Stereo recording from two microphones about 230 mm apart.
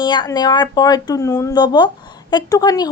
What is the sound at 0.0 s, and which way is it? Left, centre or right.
A woman's voice, centre.